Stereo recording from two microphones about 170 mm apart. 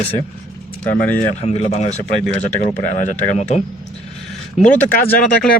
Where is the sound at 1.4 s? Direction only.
40° left (ahead or behind).